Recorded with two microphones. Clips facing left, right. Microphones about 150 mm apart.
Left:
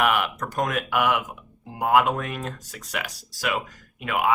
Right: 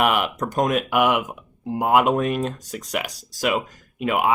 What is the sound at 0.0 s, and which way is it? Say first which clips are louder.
Speech: right 2 dB; 20° right (ahead or behind).